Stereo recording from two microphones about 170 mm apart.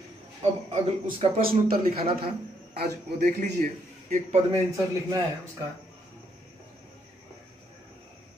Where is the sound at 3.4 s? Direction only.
45° right (ahead or behind).